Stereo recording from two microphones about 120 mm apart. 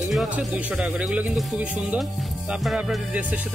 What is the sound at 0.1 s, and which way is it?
Speech, 5° right (ahead or behind).